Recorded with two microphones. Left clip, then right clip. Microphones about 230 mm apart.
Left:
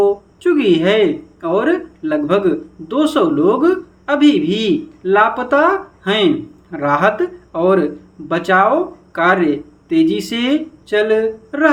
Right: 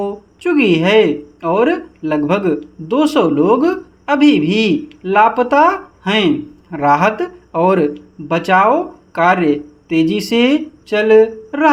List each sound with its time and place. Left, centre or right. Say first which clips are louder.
0.0 s speech: left 6 dB; right